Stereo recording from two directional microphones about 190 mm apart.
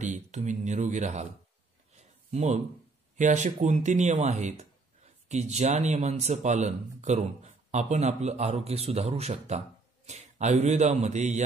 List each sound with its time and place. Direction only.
0.0 s speech: 40° right (ahead or behind)
2.3 s speech: 35° right (ahead or behind)